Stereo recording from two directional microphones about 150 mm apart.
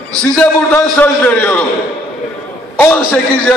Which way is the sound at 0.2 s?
10° left (ahead or behind).